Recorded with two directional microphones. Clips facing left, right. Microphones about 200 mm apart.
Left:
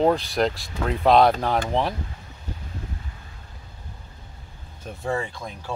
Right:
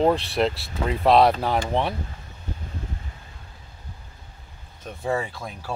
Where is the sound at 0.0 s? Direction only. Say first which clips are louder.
Even; centre (ahead or behind).